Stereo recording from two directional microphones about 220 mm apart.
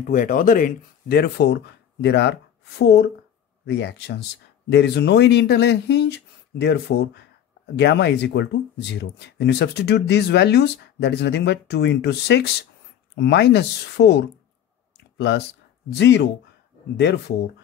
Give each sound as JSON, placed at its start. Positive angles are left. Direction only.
{"t": 0.1, "sound": "speech", "side_deg": 40}